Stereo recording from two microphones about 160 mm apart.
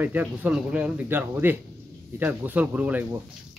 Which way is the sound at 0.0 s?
10° right (ahead or behind).